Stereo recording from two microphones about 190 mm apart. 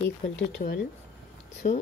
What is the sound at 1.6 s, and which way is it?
Speech, 35° left (ahead or behind).